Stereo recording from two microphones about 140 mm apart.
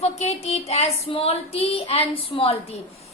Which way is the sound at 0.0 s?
50° left (ahead or behind).